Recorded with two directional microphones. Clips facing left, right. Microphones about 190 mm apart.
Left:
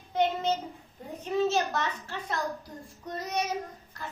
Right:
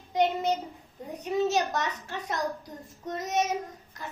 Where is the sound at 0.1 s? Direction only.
15° right (ahead or behind).